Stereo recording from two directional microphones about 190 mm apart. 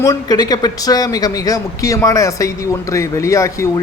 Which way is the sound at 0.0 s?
20° left (ahead or behind).